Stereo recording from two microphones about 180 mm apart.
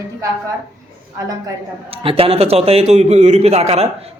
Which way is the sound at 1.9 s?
30° right (ahead or behind).